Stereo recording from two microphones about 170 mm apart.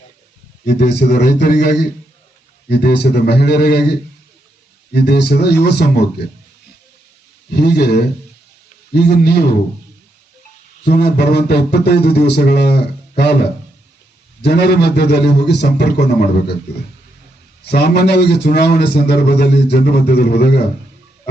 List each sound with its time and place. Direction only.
0.6 s a man's voice: 75° left (ahead or behind)
7.5 s a man's voice: 70° left (ahead or behind)
10.8 s a man's voice: 70° left (ahead or behind)
17.7 s a man's voice: 70° left (ahead or behind)